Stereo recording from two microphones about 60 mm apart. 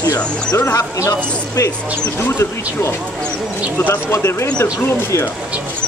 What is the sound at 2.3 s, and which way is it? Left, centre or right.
Speech, left.